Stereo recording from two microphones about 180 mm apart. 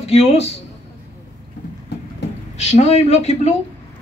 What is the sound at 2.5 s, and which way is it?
A woman's voice, 40° left (ahead or behind).